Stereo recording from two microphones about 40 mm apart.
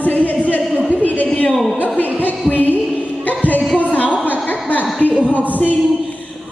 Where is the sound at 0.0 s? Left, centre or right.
Left.